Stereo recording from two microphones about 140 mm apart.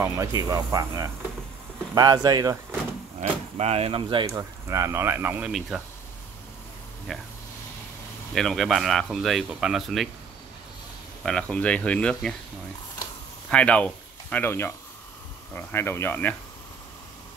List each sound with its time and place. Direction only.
0.0 s speech: 25° right (ahead or behind)
3.2 s speech: 50° right (ahead or behind)
4.3 s speech: 20° right (ahead or behind)
5.7 s speech: 5° right (ahead or behind)
7.1 s speech: centre (ahead or behind)
8.4 s speech: 5° left (ahead or behind)
11.2 s speech: 5° left (ahead or behind)
13.5 s speech: 10° left (ahead or behind)